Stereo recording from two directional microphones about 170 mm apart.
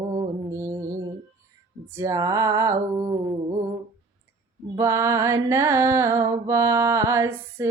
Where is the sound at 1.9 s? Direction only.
15° right (ahead or behind).